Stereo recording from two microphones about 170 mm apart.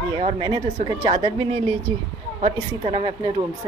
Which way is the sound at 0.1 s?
30° right (ahead or behind).